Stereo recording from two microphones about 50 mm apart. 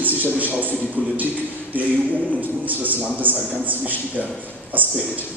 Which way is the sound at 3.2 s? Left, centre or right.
Right.